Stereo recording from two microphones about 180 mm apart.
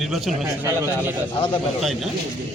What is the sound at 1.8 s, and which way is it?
Speech, centre (ahead or behind).